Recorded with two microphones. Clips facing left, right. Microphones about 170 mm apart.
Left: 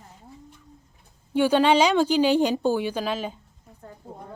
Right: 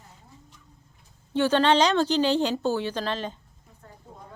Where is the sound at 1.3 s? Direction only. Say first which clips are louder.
Left 2 dB; 10° left (ahead or behind).